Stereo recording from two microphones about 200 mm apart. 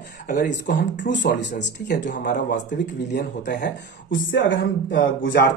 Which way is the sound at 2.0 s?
40° left (ahead or behind).